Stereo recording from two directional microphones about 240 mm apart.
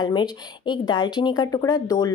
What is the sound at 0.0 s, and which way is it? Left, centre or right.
Speech, centre.